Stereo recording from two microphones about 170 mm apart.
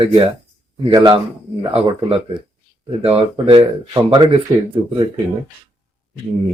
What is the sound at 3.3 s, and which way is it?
Speech, 30° right (ahead or behind).